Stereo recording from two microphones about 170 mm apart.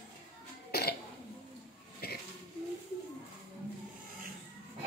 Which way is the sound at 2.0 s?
65° left (ahead or behind).